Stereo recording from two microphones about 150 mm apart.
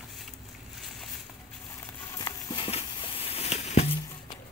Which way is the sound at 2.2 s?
35° left (ahead or behind).